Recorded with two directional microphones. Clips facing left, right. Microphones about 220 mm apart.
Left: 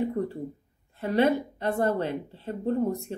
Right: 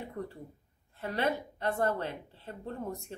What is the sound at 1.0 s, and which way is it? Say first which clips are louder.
Speech: left 9 dB; 20° left (ahead or behind).